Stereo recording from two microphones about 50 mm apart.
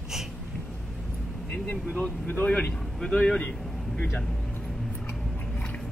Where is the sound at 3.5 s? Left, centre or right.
Centre.